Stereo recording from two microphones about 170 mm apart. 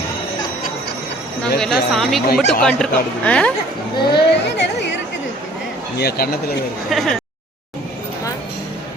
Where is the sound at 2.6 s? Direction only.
5° left (ahead or behind).